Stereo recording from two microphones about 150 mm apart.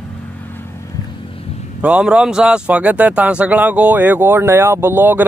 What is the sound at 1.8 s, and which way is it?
Speech, 5° right (ahead or behind).